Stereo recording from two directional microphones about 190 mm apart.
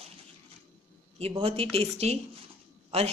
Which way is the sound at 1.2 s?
30° right (ahead or behind).